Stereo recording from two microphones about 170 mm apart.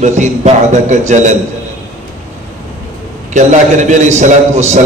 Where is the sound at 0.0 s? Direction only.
45° right (ahead or behind).